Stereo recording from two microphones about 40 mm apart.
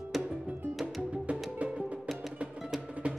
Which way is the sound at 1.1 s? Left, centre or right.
Right.